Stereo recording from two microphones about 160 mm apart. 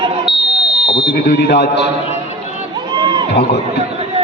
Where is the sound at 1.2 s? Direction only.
75° left (ahead or behind).